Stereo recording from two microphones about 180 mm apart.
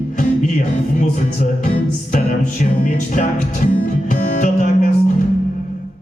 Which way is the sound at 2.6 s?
45° left (ahead or behind).